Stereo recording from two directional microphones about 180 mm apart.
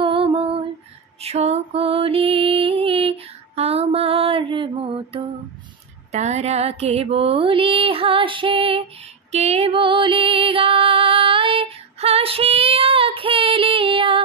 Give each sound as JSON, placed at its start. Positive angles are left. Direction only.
{"t": 0.0, "sound": "lullaby", "side_deg": -30}
{"t": 1.2, "sound": "music", "side_deg": -35}
{"t": 6.1, "sound": "a sound", "side_deg": -40}
{"t": 9.3, "sound": "music", "side_deg": -35}